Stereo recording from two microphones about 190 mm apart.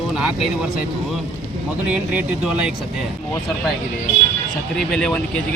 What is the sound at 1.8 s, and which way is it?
Speech, 5° right (ahead or behind).